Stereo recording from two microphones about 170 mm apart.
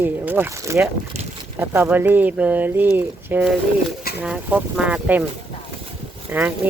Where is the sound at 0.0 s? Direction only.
10° right (ahead or behind).